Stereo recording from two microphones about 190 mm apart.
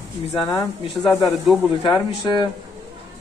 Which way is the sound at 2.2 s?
20° left (ahead or behind).